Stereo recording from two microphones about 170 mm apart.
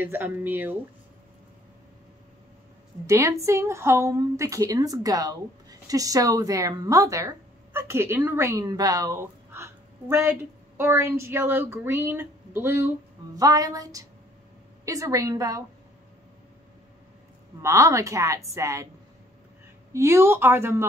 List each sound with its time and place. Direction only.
0.0 s a woman's voice: 10° right (ahead or behind)
3.1 s a woman's voice: 20° right (ahead or behind)
17.6 s a woman's voice: 15° right (ahead or behind)
19.9 s a woman's voice: 15° right (ahead or behind)